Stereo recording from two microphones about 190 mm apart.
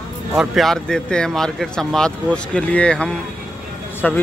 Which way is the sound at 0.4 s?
Centre (ahead or behind).